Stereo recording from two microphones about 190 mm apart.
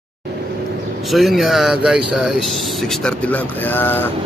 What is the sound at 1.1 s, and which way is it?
Speech, centre (ahead or behind).